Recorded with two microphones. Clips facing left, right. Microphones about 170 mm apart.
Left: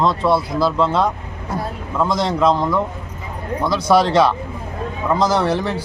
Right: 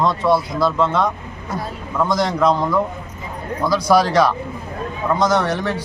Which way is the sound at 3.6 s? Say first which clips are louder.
Even; 25° left (ahead or behind).